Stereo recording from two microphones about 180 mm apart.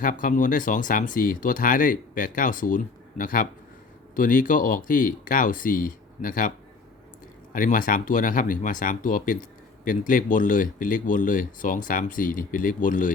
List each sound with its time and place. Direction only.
0.0 s speech: 50° left (ahead or behind)
7.5 s speech: 50° left (ahead or behind)